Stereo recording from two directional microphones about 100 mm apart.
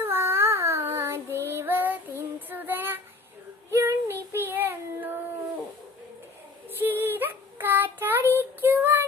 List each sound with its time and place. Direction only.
0.0 s child singing: 25° right (ahead or behind)
6.7 s child singing: 20° right (ahead or behind)